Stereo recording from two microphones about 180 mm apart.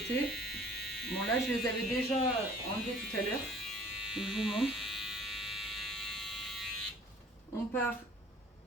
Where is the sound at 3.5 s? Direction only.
Centre (ahead or behind).